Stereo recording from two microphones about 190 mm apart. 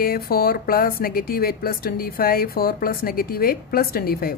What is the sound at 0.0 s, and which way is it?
Speech, 50° left (ahead or behind).